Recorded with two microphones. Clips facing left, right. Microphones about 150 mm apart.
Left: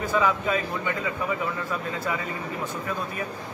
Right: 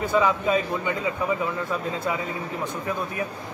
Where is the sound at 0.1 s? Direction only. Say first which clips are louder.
Right 2 dB; 10° right (ahead or behind).